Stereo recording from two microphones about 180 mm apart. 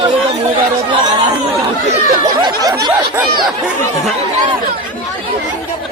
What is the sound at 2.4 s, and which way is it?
Snicker, 20° right (ahead or behind).